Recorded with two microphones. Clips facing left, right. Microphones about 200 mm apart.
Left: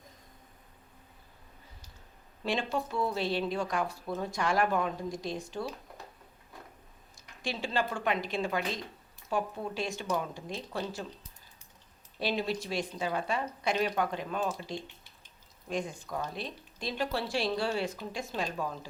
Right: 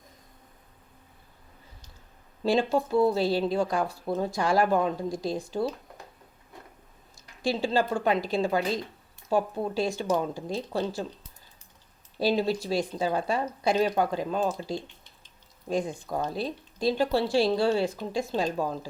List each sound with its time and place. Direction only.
2.4 s speech: 30° right (ahead or behind)
7.4 s speech: 30° right (ahead or behind)
12.2 s a woman's voice: 35° right (ahead or behind)